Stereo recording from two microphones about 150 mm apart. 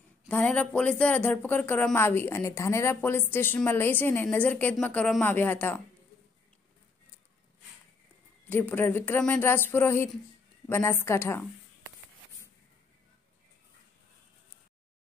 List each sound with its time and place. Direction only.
0.3 s speech: 10° left (ahead or behind)
8.5 s speech: 15° left (ahead or behind)